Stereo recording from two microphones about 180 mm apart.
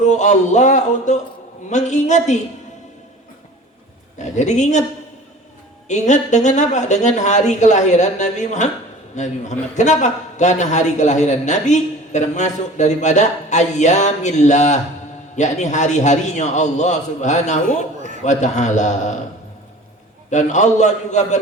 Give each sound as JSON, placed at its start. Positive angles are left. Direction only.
{"t": 0.0, "sound": "a man's voice", "side_deg": 40}
{"t": 4.2, "sound": "a man's voice", "side_deg": 40}
{"t": 5.9, "sound": "a man's voice", "side_deg": 40}
{"t": 20.3, "sound": "a man's voice", "side_deg": 40}